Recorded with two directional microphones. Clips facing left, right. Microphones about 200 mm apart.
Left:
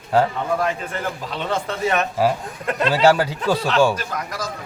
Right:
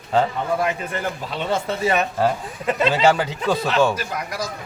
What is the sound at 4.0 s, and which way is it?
Speech, 10° right (ahead or behind).